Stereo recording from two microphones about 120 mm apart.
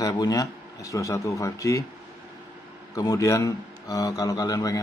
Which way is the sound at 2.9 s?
30° left (ahead or behind).